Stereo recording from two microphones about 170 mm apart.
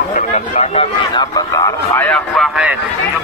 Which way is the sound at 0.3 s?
40° left (ahead or behind).